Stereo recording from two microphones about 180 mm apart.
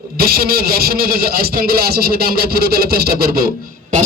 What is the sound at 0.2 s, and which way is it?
A man's voice, 55° right (ahead or behind).